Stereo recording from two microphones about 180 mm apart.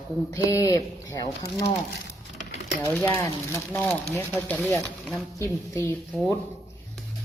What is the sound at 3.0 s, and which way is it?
Speech, 15° left (ahead or behind).